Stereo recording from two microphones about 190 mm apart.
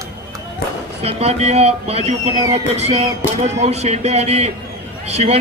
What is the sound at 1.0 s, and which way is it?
Speech, 35° right (ahead or behind).